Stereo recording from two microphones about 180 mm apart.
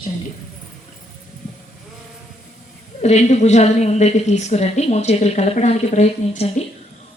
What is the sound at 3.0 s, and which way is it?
A woman's voice, 40° left (ahead or behind).